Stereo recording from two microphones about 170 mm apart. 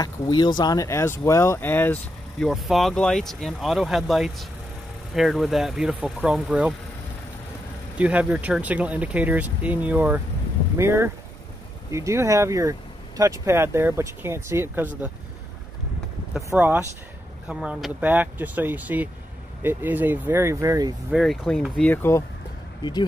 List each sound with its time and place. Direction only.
0.0 s speech: 25° left (ahead or behind)
2.4 s speech: centre (ahead or behind)
8.0 s speech: 10° right (ahead or behind)
16.4 s speech: 10° right (ahead or behind)
21.1 s speech: centre (ahead or behind)
22.8 s speech: 25° left (ahead or behind)